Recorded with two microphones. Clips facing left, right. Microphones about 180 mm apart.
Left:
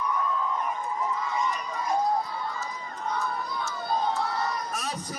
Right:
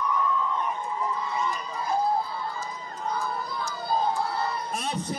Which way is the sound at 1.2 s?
30° right (ahead or behind).